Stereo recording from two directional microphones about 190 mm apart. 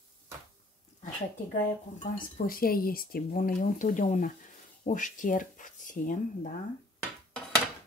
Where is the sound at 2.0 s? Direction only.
45° left (ahead or behind).